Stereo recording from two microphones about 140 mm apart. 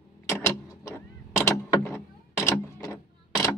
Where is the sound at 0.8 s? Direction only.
20° left (ahead or behind).